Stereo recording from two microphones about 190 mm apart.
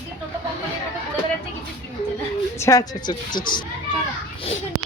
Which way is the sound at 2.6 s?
15° left (ahead or behind).